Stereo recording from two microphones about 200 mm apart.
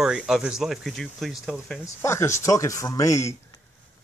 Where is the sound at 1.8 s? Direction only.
15° left (ahead or behind).